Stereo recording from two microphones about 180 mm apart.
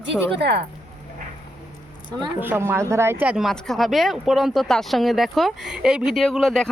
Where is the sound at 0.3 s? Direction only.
70° right (ahead or behind).